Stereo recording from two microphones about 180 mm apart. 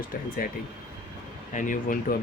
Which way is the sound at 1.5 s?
45° left (ahead or behind).